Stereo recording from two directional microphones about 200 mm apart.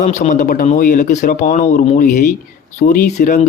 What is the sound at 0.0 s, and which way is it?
Speech, 35° left (ahead or behind).